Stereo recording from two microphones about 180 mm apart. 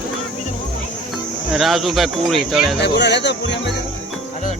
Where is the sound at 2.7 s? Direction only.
70° left (ahead or behind).